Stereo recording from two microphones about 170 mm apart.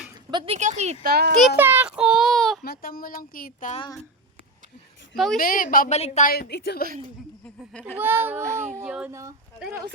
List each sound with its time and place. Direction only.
0.3 s speech: 25° right (ahead or behind)
0.5 s speech: 45° right (ahead or behind)
1.0 s a child's voice: 65° right (ahead or behind)
1.5 s speech: 10° right (ahead or behind)
2.6 s speech: 60° left (ahead or behind)
5.1 s a woman's voice: centre (ahead or behind)
5.4 s speech: 55° left (ahead or behind)
5.9 s speech: 40° left (ahead or behind)
6.2 s speech: 55° left (ahead or behind)
6.5 s a woman's voice: 70° left (ahead or behind)
7.4 s speech: 5° left (ahead or behind)
7.9 s a child's voice: 10° right (ahead or behind)